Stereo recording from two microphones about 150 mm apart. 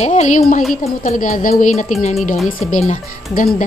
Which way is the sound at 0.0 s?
50° left (ahead or behind).